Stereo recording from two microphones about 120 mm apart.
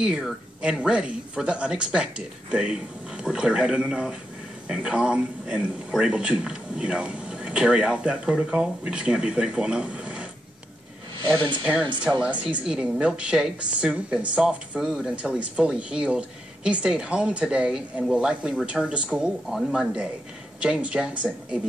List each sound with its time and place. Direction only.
0.0 s speech: 5° right (ahead or behind)
11.2 s speech: 40° right (ahead or behind)
12.0 s speech: 10° right (ahead or behind)